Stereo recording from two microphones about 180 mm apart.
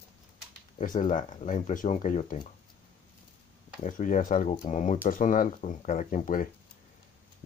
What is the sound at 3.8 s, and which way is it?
Speech, 45° left (ahead or behind).